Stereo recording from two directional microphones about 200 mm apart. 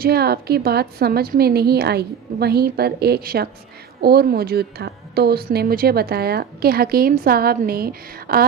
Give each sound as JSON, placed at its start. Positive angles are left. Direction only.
{"t": 0.0, "sound": "speech", "side_deg": -50}